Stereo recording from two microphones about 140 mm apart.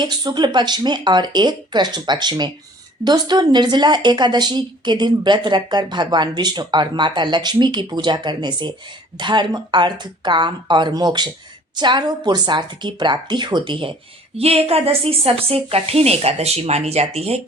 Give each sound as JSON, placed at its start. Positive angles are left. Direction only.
{"t": 0.0, "sound": "speech", "side_deg": -30}